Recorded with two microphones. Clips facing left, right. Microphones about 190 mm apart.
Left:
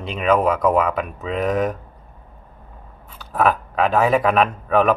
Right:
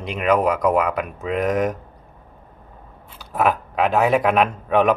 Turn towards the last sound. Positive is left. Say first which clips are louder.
# even
turn(degrees=-5)  # may be behind; listen again after turning